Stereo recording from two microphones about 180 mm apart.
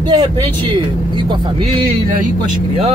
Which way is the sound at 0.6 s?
25° right (ahead or behind).